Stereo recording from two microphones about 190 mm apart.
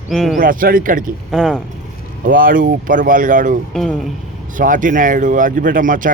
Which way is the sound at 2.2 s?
45° right (ahead or behind).